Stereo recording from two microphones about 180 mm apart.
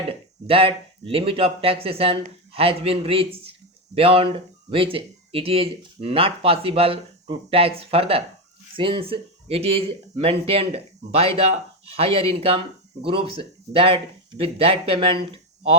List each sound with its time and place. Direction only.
0.1 s speech: 30° right (ahead or behind)